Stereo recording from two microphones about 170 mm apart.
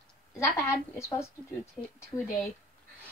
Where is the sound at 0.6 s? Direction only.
15° left (ahead or behind).